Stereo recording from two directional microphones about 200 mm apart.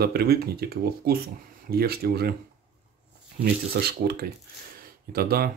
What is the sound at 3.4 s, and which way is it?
Speech, 50° right (ahead or behind).